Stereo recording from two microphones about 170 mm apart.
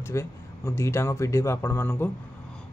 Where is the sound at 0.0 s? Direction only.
15° left (ahead or behind).